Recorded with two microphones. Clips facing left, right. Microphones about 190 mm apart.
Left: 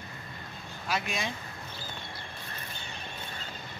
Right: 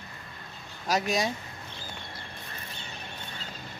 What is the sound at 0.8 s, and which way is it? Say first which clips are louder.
Speech: right 6 dB; 40° right (ahead or behind).